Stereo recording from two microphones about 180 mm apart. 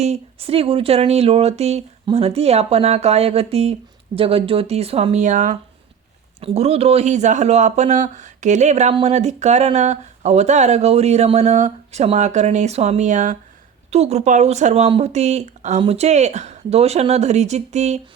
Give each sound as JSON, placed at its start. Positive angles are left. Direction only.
{"t": 0.0, "sound": "speech", "side_deg": -35}